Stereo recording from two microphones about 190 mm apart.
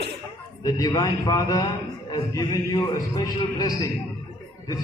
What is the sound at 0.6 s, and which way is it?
A man's voice, 20° left (ahead or behind).